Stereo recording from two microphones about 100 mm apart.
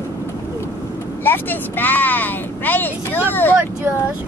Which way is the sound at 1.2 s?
20° left (ahead or behind).